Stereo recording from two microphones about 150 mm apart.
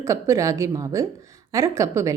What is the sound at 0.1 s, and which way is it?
Speech, 20° right (ahead or behind).